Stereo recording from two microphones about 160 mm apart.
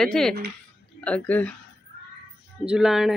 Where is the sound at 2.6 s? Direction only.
5° right (ahead or behind).